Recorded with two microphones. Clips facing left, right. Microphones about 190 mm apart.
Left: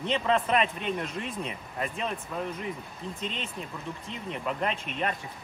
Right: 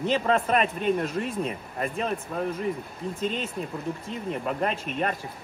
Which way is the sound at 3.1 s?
Centre (ahead or behind).